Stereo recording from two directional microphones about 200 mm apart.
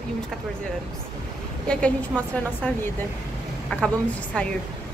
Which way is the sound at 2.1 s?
5° left (ahead or behind).